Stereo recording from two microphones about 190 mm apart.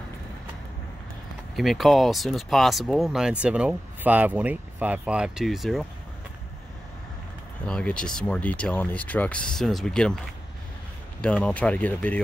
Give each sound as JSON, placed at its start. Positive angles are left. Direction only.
{"t": 1.6, "sound": "speech", "side_deg": 0}
{"t": 7.6, "sound": "speech", "side_deg": 5}